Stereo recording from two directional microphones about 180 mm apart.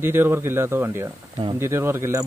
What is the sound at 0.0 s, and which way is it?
Speech, 10° right (ahead or behind).